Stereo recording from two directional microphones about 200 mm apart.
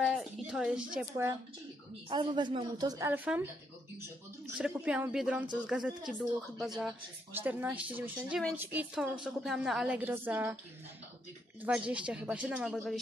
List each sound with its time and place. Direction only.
0.0 s a woman's voice: 5° right (ahead or behind)
4.6 s a woman's voice: 5° right (ahead or behind)
7.3 s a woman's voice: 10° right (ahead or behind)
11.6 s a woman's voice: 5° right (ahead or behind)